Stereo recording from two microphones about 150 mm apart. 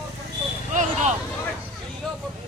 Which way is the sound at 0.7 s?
55° right (ahead or behind).